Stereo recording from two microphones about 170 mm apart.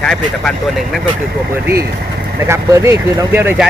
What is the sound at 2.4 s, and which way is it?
Speech, 15° right (ahead or behind).